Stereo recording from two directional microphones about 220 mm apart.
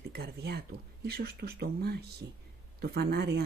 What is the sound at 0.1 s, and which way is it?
Speech, 50° right (ahead or behind).